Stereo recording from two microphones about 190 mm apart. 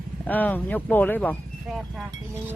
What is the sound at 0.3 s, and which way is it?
Speech, 10° left (ahead or behind).